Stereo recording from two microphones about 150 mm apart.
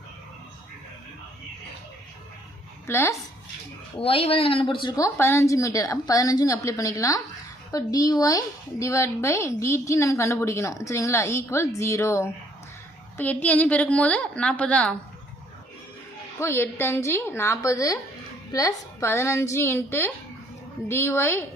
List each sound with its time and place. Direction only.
2.8 s a woman's voice: 15° left (ahead or behind)
4.0 s a woman's voice: 40° left (ahead or behind); by 14.9 s 5° left (ahead or behind)
16.4 s a woman's voice: 15° left (ahead or behind)